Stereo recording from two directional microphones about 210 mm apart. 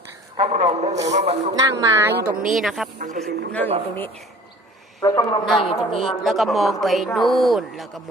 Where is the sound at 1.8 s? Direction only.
15° right (ahead or behind).